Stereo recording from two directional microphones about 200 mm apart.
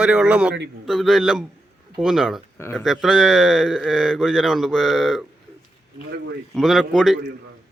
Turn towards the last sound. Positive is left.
turn(degrees=0)  # may be behind; listen again after turning